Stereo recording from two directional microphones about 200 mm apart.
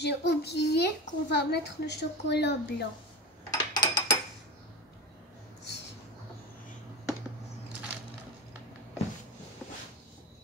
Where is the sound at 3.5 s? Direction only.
20° left (ahead or behind).